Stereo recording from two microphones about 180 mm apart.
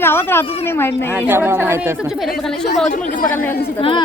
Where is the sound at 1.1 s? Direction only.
10° right (ahead or behind).